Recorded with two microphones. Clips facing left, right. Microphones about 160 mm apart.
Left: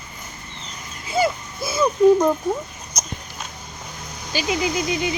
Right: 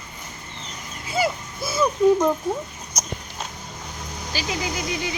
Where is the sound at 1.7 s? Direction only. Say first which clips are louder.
Left 3 dB; 15° left (ahead or behind).